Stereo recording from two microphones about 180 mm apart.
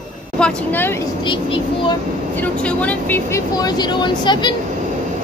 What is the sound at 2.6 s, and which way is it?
Speech, 5° left (ahead or behind).